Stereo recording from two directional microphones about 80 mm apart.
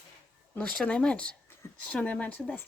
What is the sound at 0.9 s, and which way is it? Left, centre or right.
A woman's voice, centre.